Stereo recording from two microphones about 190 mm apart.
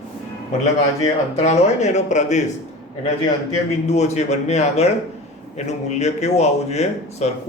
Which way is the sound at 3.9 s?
35° left (ahead or behind).